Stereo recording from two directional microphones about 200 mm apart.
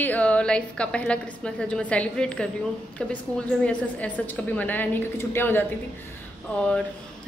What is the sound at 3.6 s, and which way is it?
A woman's voice, 5° left (ahead or behind).